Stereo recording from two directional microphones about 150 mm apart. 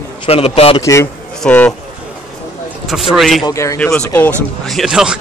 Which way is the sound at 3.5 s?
20° left (ahead or behind).